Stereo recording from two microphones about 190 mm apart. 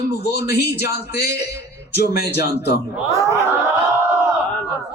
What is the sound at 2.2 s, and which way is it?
Speech, 60° left (ahead or behind).